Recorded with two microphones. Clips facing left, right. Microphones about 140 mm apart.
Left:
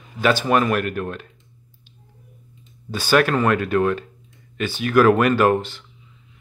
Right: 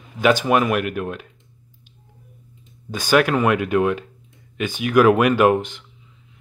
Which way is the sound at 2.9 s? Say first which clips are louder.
Right 1 dB; 15° right (ahead or behind).